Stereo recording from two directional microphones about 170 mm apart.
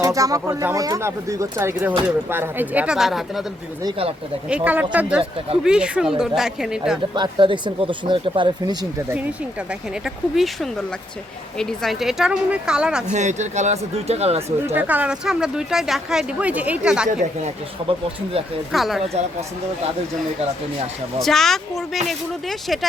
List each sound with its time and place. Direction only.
0.0 s speech: 20° right (ahead or behind); by 3.4 s centre (ahead or behind)
3.8 s speech: 35° right (ahead or behind)
4.4 s speech: 10° right (ahead or behind)
7.1 s speech: 30° right (ahead or behind)
10.0 s speech: centre (ahead or behind)
13.1 s speech: 45° right (ahead or behind)
14.7 s speech: 10° right (ahead or behind)
17.1 s speech: 45° right (ahead or behind)
18.7 s speech: centre (ahead or behind)
19.0 s speech: 40° right (ahead or behind)
21.2 s speech: centre (ahead or behind)